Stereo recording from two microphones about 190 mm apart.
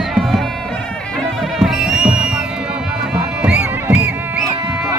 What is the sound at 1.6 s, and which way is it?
Music, centre (ahead or behind).